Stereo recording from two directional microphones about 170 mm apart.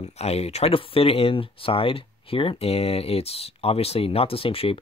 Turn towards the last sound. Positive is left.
turn(degrees=35)  # may be behind; listen again after turning